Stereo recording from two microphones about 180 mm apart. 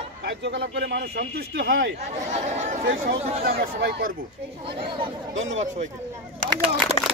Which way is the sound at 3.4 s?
60° right (ahead or behind).